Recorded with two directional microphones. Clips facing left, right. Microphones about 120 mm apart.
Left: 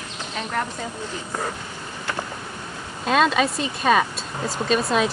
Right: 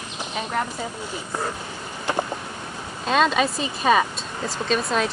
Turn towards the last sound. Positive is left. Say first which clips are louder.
# left 2 dB
turn(degrees=0)  # may be behind; listen again after turning